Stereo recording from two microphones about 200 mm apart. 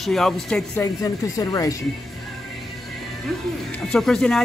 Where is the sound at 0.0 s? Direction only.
Centre (ahead or behind).